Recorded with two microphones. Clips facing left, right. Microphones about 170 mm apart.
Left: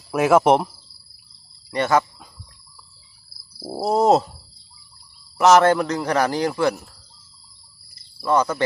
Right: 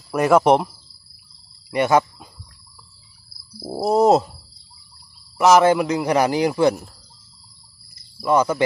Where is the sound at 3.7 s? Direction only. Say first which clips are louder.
Right 2 dB; centre (ahead or behind).